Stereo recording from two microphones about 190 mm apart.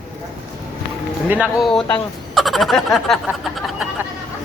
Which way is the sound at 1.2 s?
10° right (ahead or behind).